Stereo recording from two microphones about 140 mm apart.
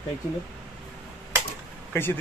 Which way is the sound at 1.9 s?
15° left (ahead or behind).